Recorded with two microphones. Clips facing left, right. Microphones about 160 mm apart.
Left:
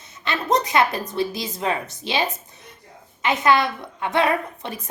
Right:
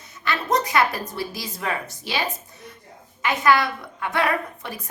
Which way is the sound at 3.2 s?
20° left (ahead or behind).